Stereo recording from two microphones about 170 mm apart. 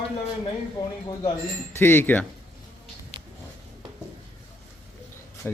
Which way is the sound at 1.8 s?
15° left (ahead or behind).